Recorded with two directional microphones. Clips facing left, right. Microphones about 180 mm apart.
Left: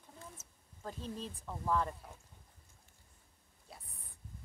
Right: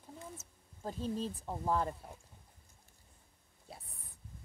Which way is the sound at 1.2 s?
30° right (ahead or behind).